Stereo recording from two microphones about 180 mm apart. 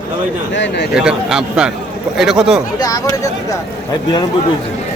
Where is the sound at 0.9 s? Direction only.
5° right (ahead or behind).